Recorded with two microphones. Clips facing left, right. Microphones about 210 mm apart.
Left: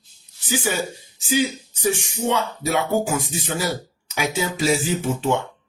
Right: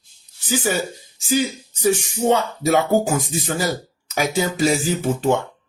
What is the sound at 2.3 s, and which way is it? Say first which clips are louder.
Speech: right 5 dB; 45° right (ahead or behind).